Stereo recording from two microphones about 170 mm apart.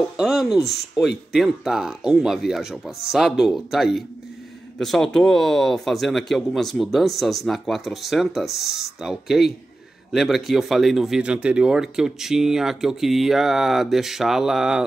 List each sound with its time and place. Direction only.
0.2 s speech: centre (ahead or behind)